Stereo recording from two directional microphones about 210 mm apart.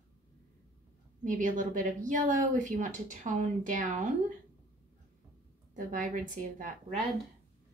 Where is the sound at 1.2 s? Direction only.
40° right (ahead or behind).